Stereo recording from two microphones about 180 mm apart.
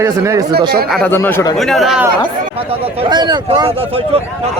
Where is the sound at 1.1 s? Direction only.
10° left (ahead or behind).